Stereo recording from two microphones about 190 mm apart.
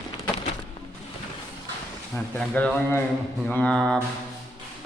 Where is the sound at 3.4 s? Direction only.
5° left (ahead or behind).